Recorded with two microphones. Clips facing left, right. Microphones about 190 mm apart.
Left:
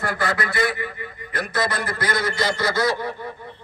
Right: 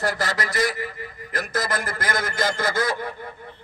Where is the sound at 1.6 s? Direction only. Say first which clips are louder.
Left 2 dB; 45° right (ahead or behind).